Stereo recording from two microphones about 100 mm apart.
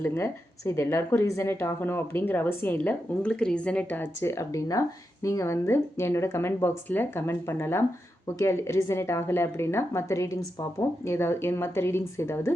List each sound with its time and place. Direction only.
0.0 s a woman's voice: 25° left (ahead or behind)